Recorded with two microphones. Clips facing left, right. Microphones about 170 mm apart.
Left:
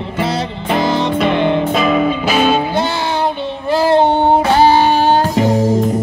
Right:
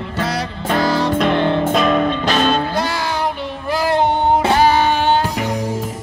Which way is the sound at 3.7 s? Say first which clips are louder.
Left 5 dB; 30° left (ahead or behind).